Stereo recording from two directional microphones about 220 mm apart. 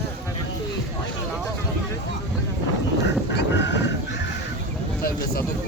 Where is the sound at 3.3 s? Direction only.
50° left (ahead or behind).